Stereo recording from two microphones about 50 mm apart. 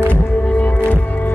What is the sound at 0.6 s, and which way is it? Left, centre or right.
Music, left.